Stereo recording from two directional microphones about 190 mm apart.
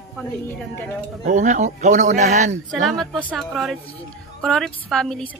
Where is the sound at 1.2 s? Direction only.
40° right (ahead or behind).